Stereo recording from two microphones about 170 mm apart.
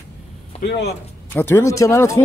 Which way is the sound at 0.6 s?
75° left (ahead or behind).